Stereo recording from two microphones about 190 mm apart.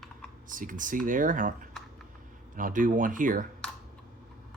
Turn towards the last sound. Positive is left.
turn(degrees=-45)  # may be behind; listen again after turning